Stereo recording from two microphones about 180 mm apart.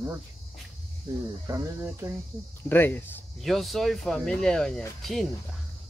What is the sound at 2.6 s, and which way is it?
Speech, 10° left (ahead or behind).